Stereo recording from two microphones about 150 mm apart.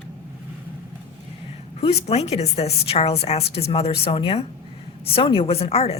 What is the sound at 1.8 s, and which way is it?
A woman's voice, 45° left (ahead or behind).